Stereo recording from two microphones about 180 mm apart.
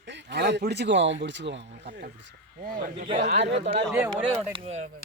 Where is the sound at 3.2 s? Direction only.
40° right (ahead or behind).